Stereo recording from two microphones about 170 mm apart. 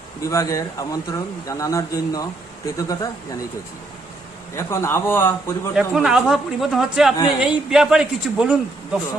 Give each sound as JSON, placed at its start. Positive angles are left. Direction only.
{"t": 0.2, "sound": "speech", "side_deg": 20}
{"t": 4.5, "sound": "a man's voice", "side_deg": 15}
{"t": 5.7, "sound": "a man's voice", "side_deg": -5}